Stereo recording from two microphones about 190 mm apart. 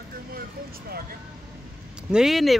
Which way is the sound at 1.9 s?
5° right (ahead or behind).